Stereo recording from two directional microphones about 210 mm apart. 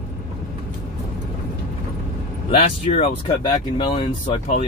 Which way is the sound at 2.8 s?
25° left (ahead or behind).